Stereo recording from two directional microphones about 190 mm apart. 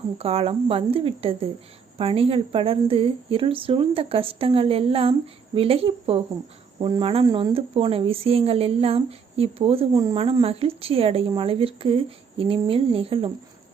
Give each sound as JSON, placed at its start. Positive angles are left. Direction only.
{"t": 0.2, "sound": "a woman's voice", "side_deg": -30}